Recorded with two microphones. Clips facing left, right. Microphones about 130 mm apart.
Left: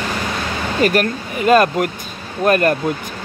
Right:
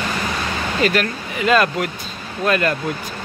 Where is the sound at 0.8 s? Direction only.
45° left (ahead or behind).